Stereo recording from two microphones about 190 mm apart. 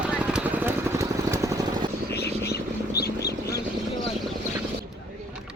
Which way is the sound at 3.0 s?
55° left (ahead or behind).